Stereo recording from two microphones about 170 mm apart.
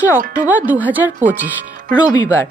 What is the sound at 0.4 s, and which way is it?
Speech, 10° right (ahead or behind).